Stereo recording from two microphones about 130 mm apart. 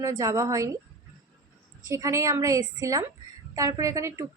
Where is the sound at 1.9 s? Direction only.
25° right (ahead or behind).